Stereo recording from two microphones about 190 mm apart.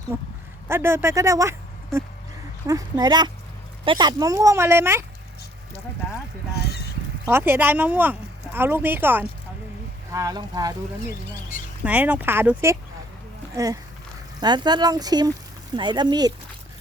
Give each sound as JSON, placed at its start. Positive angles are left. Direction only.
{"t": 0.1, "sound": "a woman's voice", "side_deg": -15}
{"t": 7.3, "sound": "speech", "side_deg": -10}
{"t": 11.9, "sound": "speech", "side_deg": -10}